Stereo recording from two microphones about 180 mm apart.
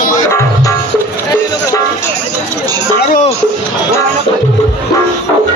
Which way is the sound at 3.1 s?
40° left (ahead or behind).